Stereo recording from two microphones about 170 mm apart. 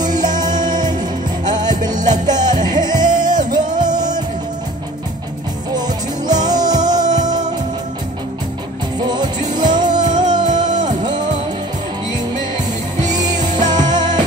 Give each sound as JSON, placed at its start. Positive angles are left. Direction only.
{"t": 0.0, "sound": "music", "side_deg": -25}
{"t": 5.7, "sound": "music", "side_deg": -25}
{"t": 9.0, "sound": "music", "side_deg": -25}
{"t": 13.2, "sound": "music", "side_deg": -25}